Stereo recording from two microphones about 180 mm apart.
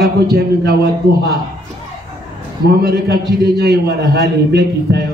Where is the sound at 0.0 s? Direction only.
65° right (ahead or behind).